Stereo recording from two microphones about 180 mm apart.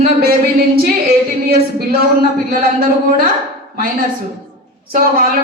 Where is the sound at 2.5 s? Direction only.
55° right (ahead or behind).